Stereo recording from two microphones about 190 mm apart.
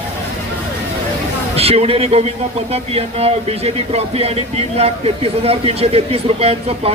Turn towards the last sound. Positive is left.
turn(degrees=-30)  # may be behind; listen again after turning